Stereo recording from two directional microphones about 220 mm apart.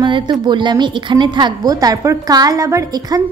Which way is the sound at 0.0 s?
20° right (ahead or behind).